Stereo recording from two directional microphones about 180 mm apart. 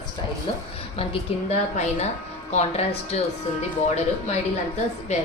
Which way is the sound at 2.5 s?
35° left (ahead or behind).